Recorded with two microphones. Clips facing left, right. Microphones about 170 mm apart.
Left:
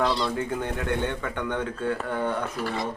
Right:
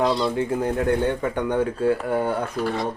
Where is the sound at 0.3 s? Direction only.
30° right (ahead or behind).